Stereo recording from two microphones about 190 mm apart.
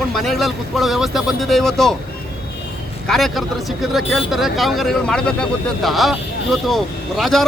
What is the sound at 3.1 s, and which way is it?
Speech, centre (ahead or behind).